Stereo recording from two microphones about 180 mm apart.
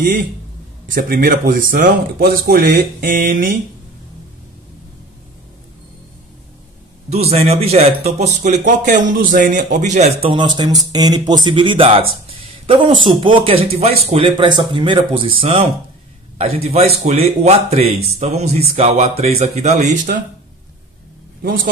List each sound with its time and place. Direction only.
0.0 s a sound: 50° right (ahead or behind)
0.9 s speech: 60° right (ahead or behind)
2.8 s a sound: 50° right (ahead or behind)
7.1 s speech: 35° right (ahead or behind)
10.3 s speech: 25° right (ahead or behind)
13.0 s speech: 25° right (ahead or behind); by 20.2 s 45° right (ahead or behind)